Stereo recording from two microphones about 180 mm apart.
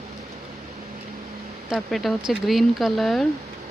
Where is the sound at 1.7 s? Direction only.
Centre (ahead or behind).